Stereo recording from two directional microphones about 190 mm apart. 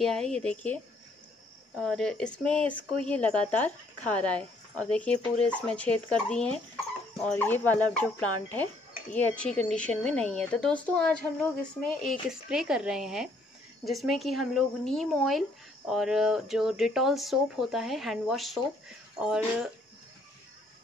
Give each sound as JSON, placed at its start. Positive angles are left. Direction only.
{"t": 0.0, "sound": "speech", "side_deg": 5}
{"t": 1.8, "sound": "speech", "side_deg": 5}